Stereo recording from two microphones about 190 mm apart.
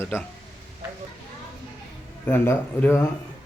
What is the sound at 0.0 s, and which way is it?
Speech, 10° left (ahead or behind).